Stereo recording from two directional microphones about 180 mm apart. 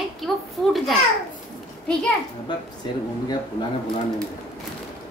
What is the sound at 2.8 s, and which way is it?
Speech, 25° left (ahead or behind).